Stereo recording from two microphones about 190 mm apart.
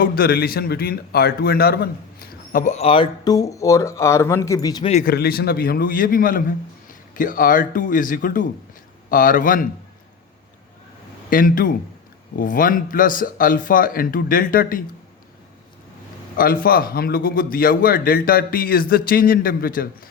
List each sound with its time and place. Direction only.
0.0 s a man's voice: 50° left (ahead or behind); by 4.9 s 20° left (ahead or behind)
5.0 s a man's voice: 55° left (ahead or behind)
11.3 s a man's voice: 45° left (ahead or behind)
16.3 s a man's voice: 50° left (ahead or behind)